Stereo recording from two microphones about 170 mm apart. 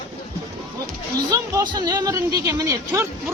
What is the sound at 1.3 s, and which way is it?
A woman's voice, 25° right (ahead or behind).